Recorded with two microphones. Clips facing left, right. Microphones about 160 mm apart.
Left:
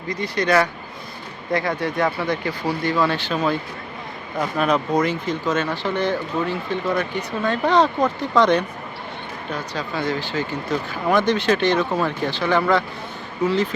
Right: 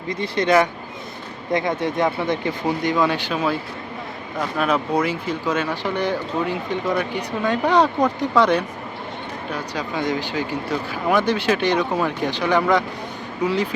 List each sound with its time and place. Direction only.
0.1 s speech: 25° right (ahead or behind)